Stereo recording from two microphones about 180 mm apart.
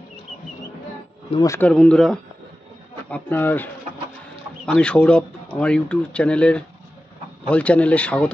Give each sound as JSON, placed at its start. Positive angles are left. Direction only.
{"t": 1.4, "sound": "speech", "side_deg": 15}
{"t": 1.7, "sound": "speech", "side_deg": 5}